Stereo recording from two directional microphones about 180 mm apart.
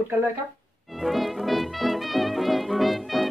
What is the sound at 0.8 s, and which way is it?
Music, centre (ahead or behind).